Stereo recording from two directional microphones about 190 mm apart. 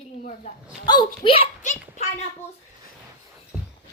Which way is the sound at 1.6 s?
40° left (ahead or behind).